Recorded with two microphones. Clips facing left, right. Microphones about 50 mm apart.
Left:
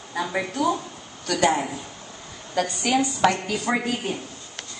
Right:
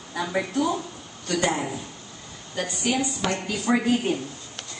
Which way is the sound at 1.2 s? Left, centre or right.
Left.